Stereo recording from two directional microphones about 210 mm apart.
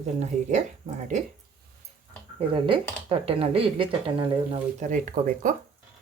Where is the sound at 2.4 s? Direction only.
25° right (ahead or behind).